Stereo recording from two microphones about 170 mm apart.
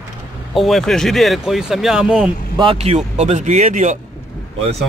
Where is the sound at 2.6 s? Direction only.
35° right (ahead or behind).